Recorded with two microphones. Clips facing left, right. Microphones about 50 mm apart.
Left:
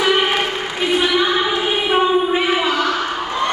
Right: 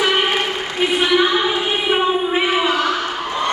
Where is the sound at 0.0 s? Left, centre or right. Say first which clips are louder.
Left 1 dB; centre.